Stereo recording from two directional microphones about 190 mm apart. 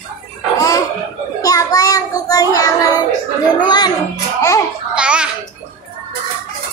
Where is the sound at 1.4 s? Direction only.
20° left (ahead or behind).